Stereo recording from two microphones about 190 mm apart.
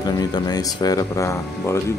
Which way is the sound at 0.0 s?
20° left (ahead or behind).